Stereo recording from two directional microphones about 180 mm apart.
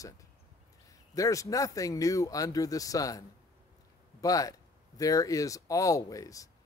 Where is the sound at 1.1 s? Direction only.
20° left (ahead or behind).